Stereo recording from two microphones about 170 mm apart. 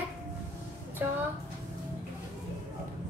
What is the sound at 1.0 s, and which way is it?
Speech, 10° right (ahead or behind).